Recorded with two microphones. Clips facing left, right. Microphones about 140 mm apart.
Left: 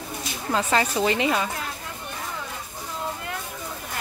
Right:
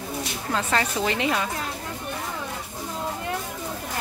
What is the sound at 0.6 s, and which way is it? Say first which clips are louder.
Speech: left 3 dB; 5° left (ahead or behind).